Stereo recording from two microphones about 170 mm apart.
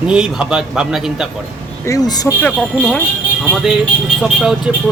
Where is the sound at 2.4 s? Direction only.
5° left (ahead or behind).